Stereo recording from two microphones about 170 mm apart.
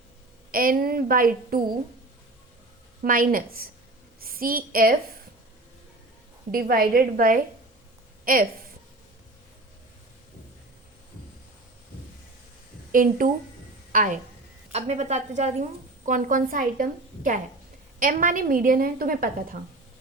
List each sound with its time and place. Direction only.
0.5 s a woman's voice: 55° right (ahead or behind)
3.0 s a woman's voice: 55° right (ahead or behind)
6.5 s a woman's voice: 60° right (ahead or behind)
12.9 s a woman's voice: 55° right (ahead or behind)